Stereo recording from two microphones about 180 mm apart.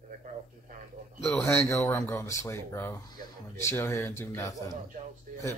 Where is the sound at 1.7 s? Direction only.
15° left (ahead or behind).